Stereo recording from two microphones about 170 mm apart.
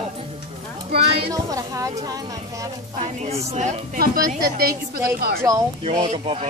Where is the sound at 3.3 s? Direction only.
40° right (ahead or behind).